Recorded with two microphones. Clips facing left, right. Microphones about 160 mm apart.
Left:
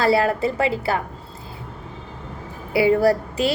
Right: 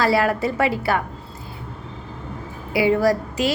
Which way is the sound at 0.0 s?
30° left (ahead or behind).